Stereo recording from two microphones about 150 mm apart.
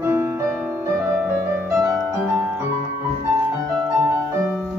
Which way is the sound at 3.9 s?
20° right (ahead or behind).